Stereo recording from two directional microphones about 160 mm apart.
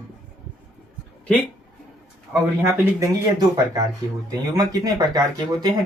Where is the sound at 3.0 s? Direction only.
20° right (ahead or behind).